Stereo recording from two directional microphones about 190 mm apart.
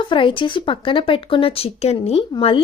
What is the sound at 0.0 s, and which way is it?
Speech, 25° left (ahead or behind).